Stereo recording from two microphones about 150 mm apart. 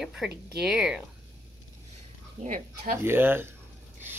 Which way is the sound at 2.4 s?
60° right (ahead or behind).